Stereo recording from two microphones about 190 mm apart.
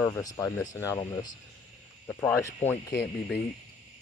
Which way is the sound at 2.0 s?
15° left (ahead or behind).